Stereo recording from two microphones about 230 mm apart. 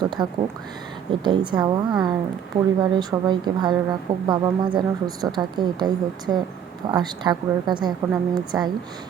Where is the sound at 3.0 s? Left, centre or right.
Centre.